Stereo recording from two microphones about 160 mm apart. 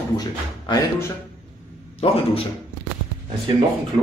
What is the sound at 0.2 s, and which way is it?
Speech, 20° left (ahead or behind).